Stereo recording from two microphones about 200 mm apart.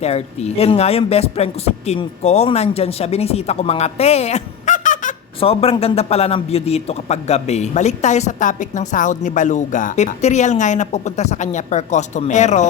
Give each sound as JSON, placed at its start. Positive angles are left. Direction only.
{"t": 0.0, "sound": "a man's voice", "side_deg": 30}
{"t": 5.4, "sound": "a man's voice", "side_deg": 30}